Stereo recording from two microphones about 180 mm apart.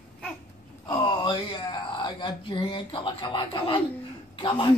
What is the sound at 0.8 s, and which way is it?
Speech, 25° left (ahead or behind).